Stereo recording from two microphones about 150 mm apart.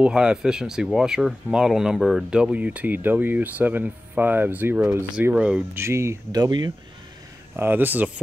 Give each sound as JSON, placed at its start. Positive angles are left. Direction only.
{"t": 0.0, "sound": "speech", "side_deg": -5}
{"t": 5.9, "sound": "speech", "side_deg": -20}
{"t": 7.5, "sound": "speech", "side_deg": -15}